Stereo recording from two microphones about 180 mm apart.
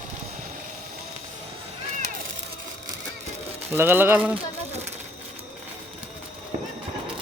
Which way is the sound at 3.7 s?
10° right (ahead or behind).